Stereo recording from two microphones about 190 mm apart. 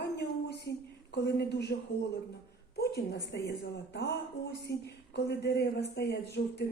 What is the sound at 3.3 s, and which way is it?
Speech, 60° left (ahead or behind).